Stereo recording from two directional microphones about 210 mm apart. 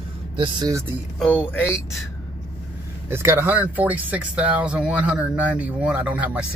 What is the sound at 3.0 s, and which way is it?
Speech, 10° right (ahead or behind).